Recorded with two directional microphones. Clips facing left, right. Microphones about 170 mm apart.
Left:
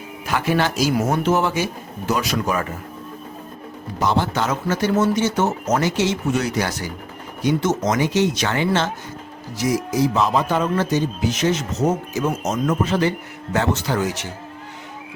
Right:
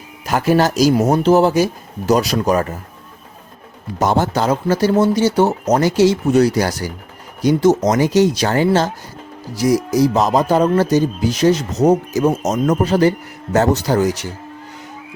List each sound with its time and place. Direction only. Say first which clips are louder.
0.3 s speech: right 6 dB; 40° right (ahead or behind)
4.0 s a man's voice: right 4 dB; 45° right (ahead or behind)
4.4 s speech: right 5 dB; 35° right (ahead or behind)